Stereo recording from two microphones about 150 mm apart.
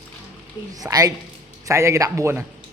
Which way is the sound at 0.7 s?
25° right (ahead or behind).